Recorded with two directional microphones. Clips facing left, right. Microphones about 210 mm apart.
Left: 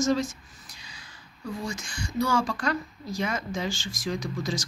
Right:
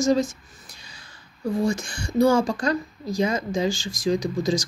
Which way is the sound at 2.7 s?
40° right (ahead or behind).